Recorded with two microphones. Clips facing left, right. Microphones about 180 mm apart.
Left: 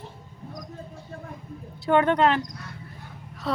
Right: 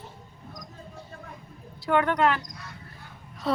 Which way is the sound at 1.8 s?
25° left (ahead or behind).